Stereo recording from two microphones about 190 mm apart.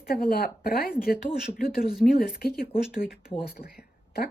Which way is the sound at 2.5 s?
50° left (ahead or behind).